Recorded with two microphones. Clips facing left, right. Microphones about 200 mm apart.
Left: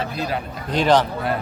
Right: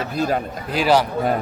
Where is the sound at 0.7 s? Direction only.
5° right (ahead or behind).